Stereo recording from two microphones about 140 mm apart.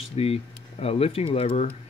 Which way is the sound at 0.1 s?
45° left (ahead or behind).